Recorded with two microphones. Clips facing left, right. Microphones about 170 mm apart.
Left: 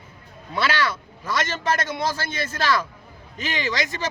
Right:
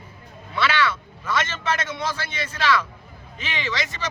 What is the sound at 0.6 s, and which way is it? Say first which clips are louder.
A man's voice: right 1 dB; 40° left (ahead or behind).